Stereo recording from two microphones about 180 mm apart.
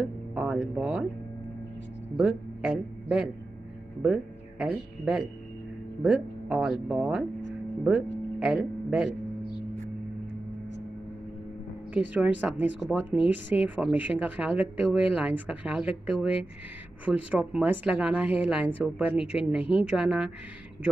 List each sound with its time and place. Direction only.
0.3 s music: 5° right (ahead or behind)
2.1 s speech: 5° right (ahead or behind)
8.4 s speech: 5° right (ahead or behind)
11.9 s speech: 10° right (ahead or behind)